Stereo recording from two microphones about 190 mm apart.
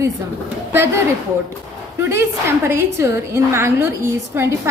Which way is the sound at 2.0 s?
15° right (ahead or behind).